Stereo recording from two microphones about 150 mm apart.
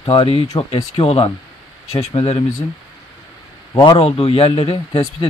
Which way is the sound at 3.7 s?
30° left (ahead or behind).